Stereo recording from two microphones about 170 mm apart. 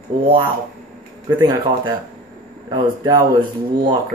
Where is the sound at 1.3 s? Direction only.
20° right (ahead or behind).